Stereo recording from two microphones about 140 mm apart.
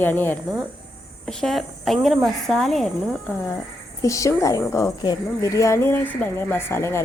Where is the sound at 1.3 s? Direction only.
5° left (ahead or behind).